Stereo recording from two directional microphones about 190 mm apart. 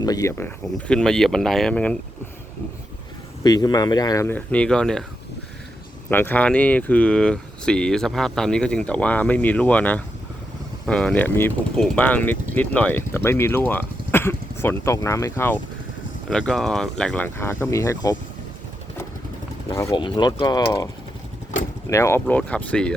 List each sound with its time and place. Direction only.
0.0 s speech: 20° left (ahead or behind)
3.4 s speech: 20° left (ahead or behind); by 5.0 s 5° left (ahead or behind)
6.1 s speech: 10° left (ahead or behind)
19.7 s speech: 15° left (ahead or behind)
21.8 s speech: 15° left (ahead or behind)